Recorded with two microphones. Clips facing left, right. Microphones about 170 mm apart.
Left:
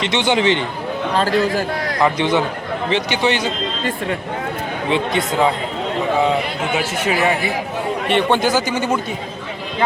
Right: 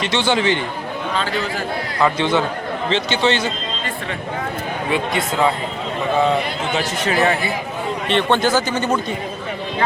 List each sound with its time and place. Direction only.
0.0 s speech: 20° left (ahead or behind)
1.1 s a man's voice: 40° left (ahead or behind)
2.0 s speech: 15° left (ahead or behind)
4.9 s speech: 20° left (ahead or behind)
6.7 s speech: 10° left (ahead or behind)